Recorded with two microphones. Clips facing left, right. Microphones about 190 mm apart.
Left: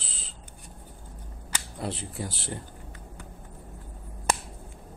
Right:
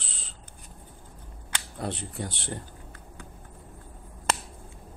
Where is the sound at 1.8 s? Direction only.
Centre (ahead or behind).